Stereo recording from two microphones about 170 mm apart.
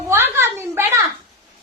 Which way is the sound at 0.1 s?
15° right (ahead or behind).